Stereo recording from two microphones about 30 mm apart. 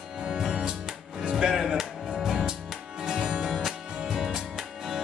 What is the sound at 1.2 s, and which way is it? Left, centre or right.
Music, right.